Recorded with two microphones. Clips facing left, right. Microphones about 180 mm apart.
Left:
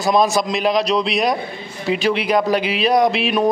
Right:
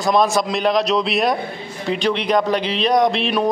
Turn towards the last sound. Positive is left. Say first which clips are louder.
# left 1 dB
turn(degrees=5)  # may be behind; listen again after turning